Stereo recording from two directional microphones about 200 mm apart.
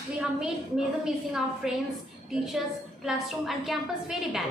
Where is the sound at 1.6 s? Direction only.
Centre (ahead or behind).